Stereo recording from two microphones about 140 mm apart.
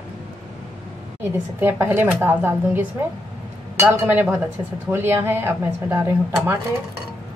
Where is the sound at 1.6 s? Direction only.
15° right (ahead or behind).